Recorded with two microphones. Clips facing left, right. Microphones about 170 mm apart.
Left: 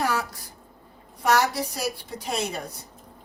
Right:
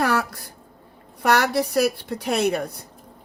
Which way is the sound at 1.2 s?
65° right (ahead or behind).